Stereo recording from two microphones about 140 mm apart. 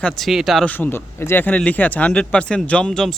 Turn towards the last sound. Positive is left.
turn(degrees=5)  # may be behind; listen again after turning